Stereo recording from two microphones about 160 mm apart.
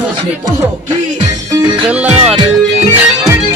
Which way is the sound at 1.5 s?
25° right (ahead or behind).